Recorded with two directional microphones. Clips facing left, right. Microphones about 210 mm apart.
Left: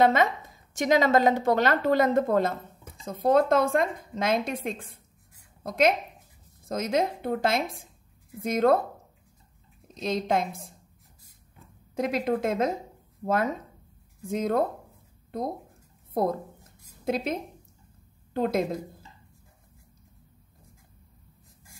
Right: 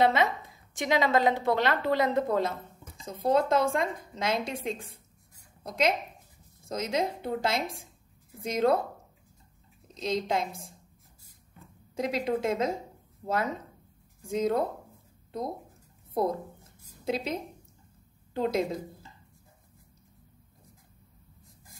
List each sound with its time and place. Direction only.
0.0 s a woman's voice: 50° left (ahead or behind)
9.9 s a woman's voice: 55° left (ahead or behind)
11.9 s a woman's voice: 55° left (ahead or behind)
14.2 s a woman's voice: 55° left (ahead or behind)
16.1 s a woman's voice: 50° left (ahead or behind)
18.3 s a woman's voice: 55° left (ahead or behind)